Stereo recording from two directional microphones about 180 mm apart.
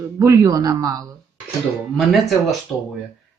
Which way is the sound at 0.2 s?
15° right (ahead or behind).